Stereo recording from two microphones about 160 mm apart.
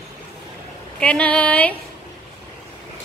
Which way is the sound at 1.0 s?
5° left (ahead or behind).